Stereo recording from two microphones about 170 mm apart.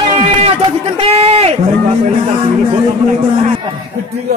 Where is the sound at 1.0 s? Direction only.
35° right (ahead or behind).